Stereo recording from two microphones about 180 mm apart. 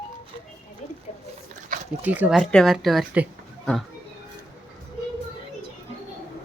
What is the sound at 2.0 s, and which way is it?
Speech, 10° right (ahead or behind).